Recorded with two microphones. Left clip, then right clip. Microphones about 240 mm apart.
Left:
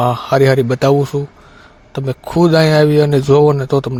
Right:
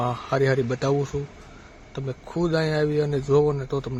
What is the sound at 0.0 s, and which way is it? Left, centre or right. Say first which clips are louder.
Speech: left 11 dB; left.